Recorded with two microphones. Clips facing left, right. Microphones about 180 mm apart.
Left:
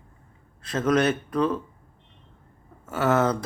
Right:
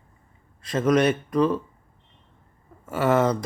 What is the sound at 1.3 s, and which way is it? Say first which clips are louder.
Speech: right 4 dB; 5° right (ahead or behind).